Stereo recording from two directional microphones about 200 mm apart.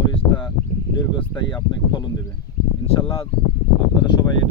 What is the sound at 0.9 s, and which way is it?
Speech, 20° left (ahead or behind).